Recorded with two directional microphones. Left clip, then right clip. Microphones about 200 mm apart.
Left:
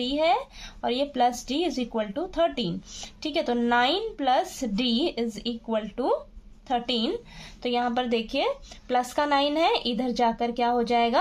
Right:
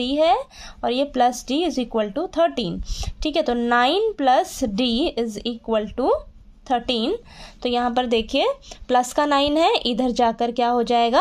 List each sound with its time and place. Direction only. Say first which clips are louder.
0.0 s a woman's voice: right 5 dB; 40° right (ahead or behind)